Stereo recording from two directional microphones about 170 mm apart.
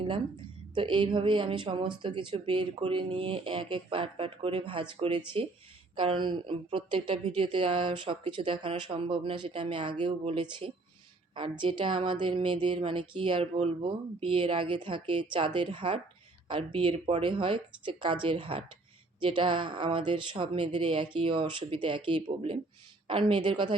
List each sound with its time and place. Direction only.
0.7 s speech: 30° right (ahead or behind)